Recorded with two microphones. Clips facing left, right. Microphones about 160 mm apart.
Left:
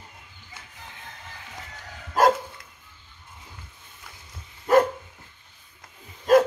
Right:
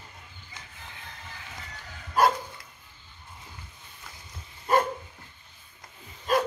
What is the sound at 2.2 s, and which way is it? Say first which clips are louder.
Dog: left 3 dB; 90° left.